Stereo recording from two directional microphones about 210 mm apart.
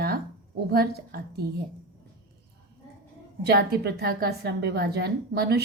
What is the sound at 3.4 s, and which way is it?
A woman's voice, 50° right (ahead or behind).